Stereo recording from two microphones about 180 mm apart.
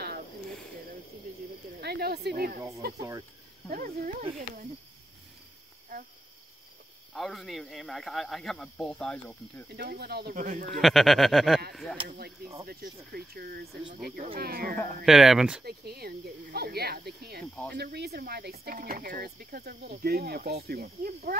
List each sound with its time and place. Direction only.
1.8 s speech: 65° right (ahead or behind)
3.0 s speech: 20° right (ahead or behind)
3.7 s speech: 50° right (ahead or behind)
7.2 s speech: centre (ahead or behind)
9.8 s speech: 60° right (ahead or behind)
10.3 s speech: 45° right (ahead or behind)
10.7 s speech: centre (ahead or behind)
12.6 s speech: 60° right (ahead or behind)
15.0 s speech: centre (ahead or behind)
15.6 s speech: 60° right (ahead or behind)